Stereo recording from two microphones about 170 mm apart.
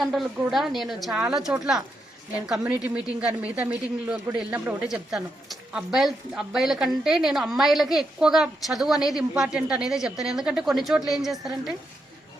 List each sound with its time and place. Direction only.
0.0 s speech: centre (ahead or behind)
3.2 s speech: 5° right (ahead or behind)